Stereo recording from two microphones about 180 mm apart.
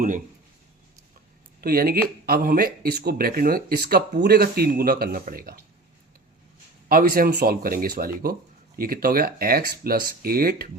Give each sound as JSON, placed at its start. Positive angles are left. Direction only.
{"t": 1.6, "sound": "speech", "side_deg": -55}
{"t": 6.8, "sound": "speech", "side_deg": -55}